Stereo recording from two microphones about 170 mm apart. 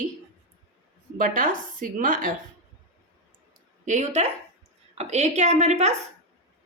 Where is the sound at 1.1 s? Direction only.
50° right (ahead or behind).